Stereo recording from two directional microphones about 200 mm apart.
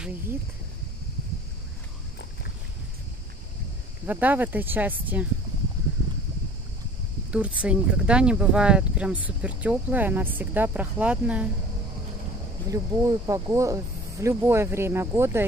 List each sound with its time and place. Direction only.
4.0 s speech: 10° right (ahead or behind)
7.2 s speech: 5° right (ahead or behind)
12.6 s speech: 15° right (ahead or behind)